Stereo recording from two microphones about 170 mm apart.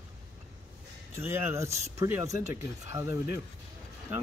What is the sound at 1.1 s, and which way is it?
Speech, 15° right (ahead or behind).